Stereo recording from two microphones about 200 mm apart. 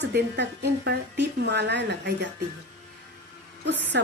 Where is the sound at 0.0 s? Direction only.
55° right (ahead or behind).